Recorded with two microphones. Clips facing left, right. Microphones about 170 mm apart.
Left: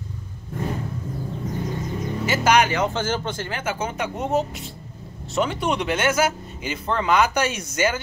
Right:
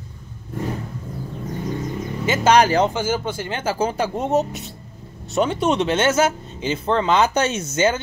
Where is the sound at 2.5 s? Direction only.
35° right (ahead or behind).